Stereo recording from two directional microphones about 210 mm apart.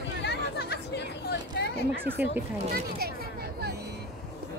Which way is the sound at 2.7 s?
45° right (ahead or behind).